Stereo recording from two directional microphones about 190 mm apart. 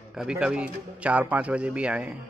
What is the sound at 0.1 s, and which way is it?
Speech, 5° right (ahead or behind).